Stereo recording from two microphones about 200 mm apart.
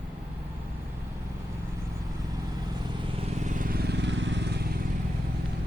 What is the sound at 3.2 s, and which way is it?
Vehicle, 35° right (ahead or behind).